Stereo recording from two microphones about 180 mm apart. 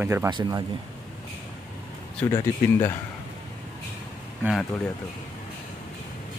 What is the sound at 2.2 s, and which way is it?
Speech, 10° left (ahead or behind).